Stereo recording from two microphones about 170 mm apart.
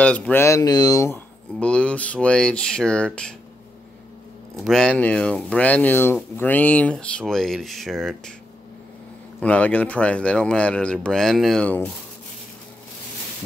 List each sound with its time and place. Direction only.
0.0 s speech: 5° left (ahead or behind)
1.6 s speech: 5° left (ahead or behind)
4.6 s speech: 5° left (ahead or behind)
9.4 s speech: 10° left (ahead or behind)